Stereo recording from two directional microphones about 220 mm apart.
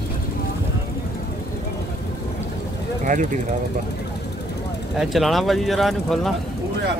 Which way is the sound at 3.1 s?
35° right (ahead or behind).